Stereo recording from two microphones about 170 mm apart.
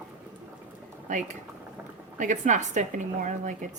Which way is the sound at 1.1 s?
45° right (ahead or behind).